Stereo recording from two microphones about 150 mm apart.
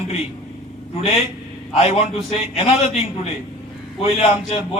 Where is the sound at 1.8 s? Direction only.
45° left (ahead or behind).